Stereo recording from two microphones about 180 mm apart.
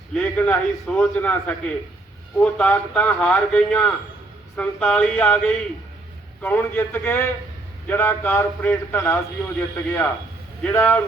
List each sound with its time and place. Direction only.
0.1 s a man's voice: 5° left (ahead or behind)